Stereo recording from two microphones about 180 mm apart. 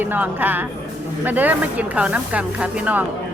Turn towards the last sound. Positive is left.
turn(degrees=-10)  # may be behind; listen again after turning